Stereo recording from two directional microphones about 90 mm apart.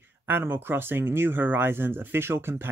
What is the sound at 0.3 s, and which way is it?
Speech, 25° right (ahead or behind).